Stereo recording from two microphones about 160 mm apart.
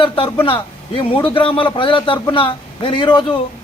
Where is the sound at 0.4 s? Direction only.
30° left (ahead or behind).